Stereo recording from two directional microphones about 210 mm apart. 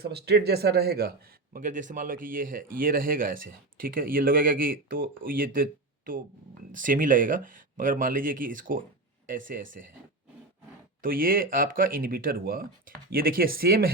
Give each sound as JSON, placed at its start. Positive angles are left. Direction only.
{"t": 0.0, "sound": "speech", "side_deg": -50}
{"t": 6.7, "sound": "speech", "side_deg": -40}
{"t": 11.0, "sound": "speech", "side_deg": -40}